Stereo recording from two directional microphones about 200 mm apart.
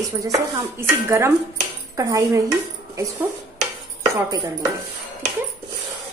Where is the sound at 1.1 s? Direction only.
15° right (ahead or behind).